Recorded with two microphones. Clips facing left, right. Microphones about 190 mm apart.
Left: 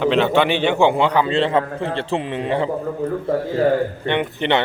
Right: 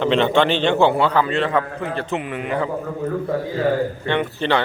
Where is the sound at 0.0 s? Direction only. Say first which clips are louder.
Even; 5° left (ahead or behind); by 2.6 s 25° left (ahead or behind).